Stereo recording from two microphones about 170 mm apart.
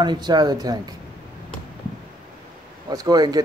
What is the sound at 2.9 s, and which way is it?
Speech, 20° right (ahead or behind).